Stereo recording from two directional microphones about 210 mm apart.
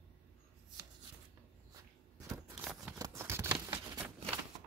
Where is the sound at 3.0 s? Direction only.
15° right (ahead or behind).